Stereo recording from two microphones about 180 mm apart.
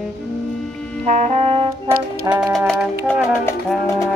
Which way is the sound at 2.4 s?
Centre (ahead or behind).